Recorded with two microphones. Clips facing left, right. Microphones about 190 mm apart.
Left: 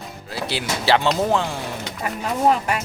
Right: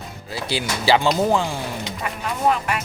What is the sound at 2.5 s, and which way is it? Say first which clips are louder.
Speech: even; 30° left (ahead or behind).